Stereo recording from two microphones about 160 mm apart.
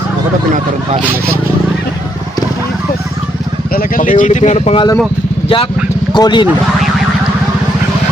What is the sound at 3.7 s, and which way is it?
Speech, 65° left (ahead or behind).